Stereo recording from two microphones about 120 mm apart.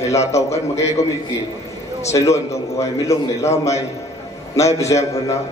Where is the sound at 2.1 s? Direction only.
25° left (ahead or behind).